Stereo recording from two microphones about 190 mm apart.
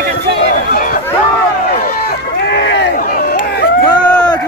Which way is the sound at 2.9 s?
45° left (ahead or behind).